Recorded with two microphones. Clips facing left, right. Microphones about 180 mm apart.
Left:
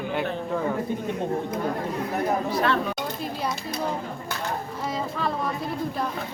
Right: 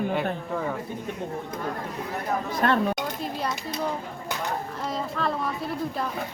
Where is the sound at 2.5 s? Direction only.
45° right (ahead or behind).